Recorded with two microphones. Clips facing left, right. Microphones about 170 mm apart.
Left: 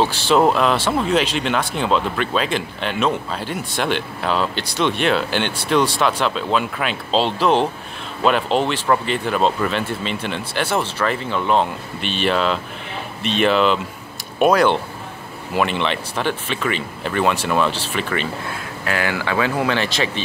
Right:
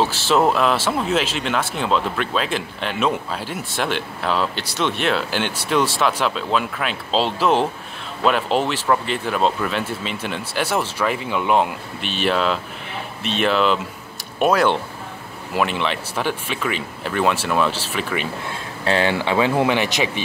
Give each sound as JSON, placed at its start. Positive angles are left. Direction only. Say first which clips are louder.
{"t": 0.0, "sound": "speech", "louder": "left 2 dB", "side_deg": -5}
{"t": 18.9, "sound": "speech", "louder": "right 3 dB", "side_deg": -25}